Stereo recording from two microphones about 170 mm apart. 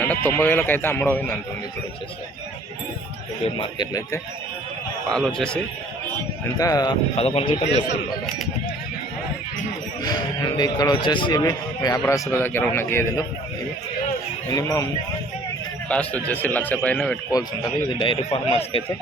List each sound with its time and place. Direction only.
0.0 s speech: 10° left (ahead or behind)
3.4 s speech: 30° left (ahead or behind)
5.0 s a man's voice: 5° left (ahead or behind)
6.6 s speech: 20° left (ahead or behind)
7.2 s speech: 35° left (ahead or behind)
10.0 s speech: 25° left (ahead or behind)
14.5 s speech: 20° left (ahead or behind)
15.9 s speech: 10° left (ahead or behind)
18.0 s speech: 30° left (ahead or behind)